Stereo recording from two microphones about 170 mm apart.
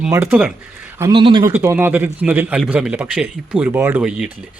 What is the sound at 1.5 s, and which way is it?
A man's voice, 15° right (ahead or behind).